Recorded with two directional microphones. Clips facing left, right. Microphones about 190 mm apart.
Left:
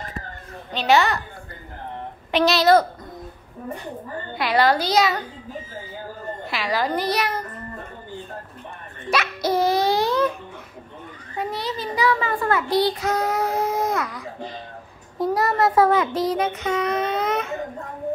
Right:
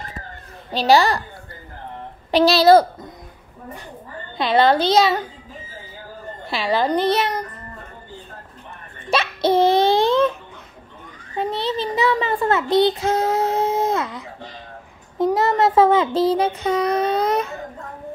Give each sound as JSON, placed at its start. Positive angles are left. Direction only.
{"t": 0.7, "sound": "a child's voice", "side_deg": -35}
{"t": 2.3, "sound": "a child's voice", "side_deg": -30}
{"t": 4.4, "sound": "a child's voice", "side_deg": -25}
{"t": 6.5, "sound": "a child's voice", "side_deg": -25}
{"t": 9.1, "sound": "a sound", "side_deg": -25}
{"t": 11.3, "sound": "a child's voice", "side_deg": -25}